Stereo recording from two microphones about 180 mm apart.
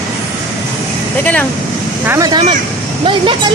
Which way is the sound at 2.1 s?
20° right (ahead or behind).